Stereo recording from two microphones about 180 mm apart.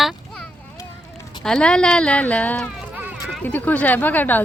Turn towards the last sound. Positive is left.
turn(degrees=10)  # may be behind; listen again after turning